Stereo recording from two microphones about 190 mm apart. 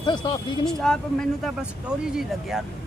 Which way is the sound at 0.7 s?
5° left (ahead or behind).